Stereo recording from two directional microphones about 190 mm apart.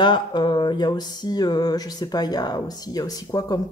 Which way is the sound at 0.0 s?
25° left (ahead or behind).